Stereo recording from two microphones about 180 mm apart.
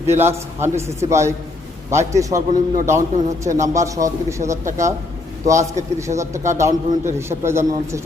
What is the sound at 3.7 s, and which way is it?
A man's voice, 15° right (ahead or behind).